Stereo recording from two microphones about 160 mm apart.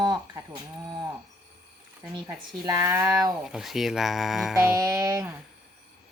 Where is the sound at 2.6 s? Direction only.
15° right (ahead or behind).